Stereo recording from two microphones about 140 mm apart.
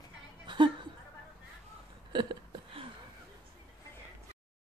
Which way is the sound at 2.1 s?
35° right (ahead or behind).